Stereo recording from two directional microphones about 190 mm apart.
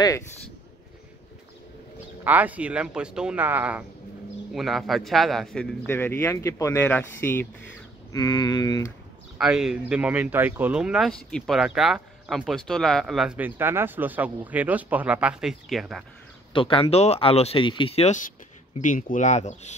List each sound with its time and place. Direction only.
2.2 s a man's voice: 10° right (ahead or behind); by 8.9 s 20° left (ahead or behind)
9.4 s speech: centre (ahead or behind)
16.5 s speech: 25° left (ahead or behind)